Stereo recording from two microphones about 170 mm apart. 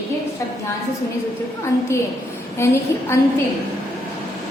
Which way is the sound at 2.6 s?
15° left (ahead or behind).